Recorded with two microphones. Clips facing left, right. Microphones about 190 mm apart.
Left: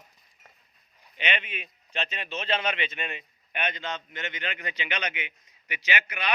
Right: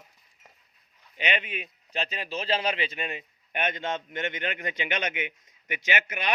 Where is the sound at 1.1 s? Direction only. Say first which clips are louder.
Right 2 dB; 40° right (ahead or behind).